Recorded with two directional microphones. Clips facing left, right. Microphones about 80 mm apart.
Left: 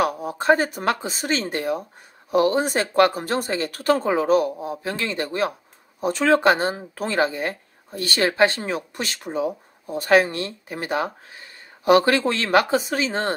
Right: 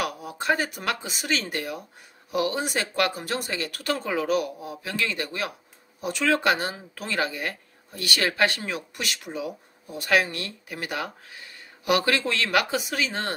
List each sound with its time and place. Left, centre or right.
0.0 s speech: left